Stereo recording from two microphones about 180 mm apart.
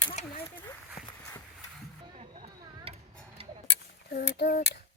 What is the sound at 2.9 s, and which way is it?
Tick-tock, 35° right (ahead or behind).